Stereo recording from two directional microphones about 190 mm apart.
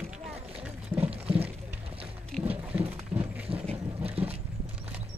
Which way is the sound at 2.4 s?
10° right (ahead or behind).